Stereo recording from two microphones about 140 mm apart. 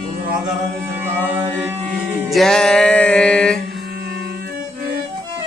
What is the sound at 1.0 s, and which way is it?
Music, 15° right (ahead or behind).